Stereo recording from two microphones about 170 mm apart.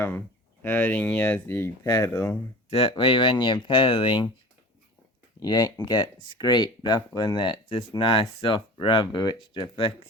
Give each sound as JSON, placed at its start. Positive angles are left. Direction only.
{"t": 0.6, "sound": "speech", "side_deg": 10}
{"t": 2.6, "sound": "speech", "side_deg": 35}
{"t": 5.4, "sound": "speech", "side_deg": 20}